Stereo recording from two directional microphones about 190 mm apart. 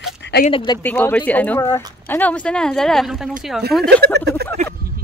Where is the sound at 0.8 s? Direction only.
10° left (ahead or behind).